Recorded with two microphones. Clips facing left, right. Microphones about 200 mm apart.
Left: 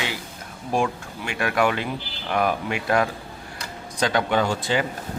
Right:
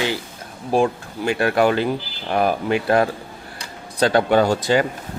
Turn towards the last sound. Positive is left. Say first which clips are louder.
# right 6 dB
turn(degrees=-40)  # may be behind; listen again after turning